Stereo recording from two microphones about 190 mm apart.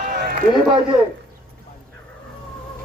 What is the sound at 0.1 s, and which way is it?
Run, 50° right (ahead or behind).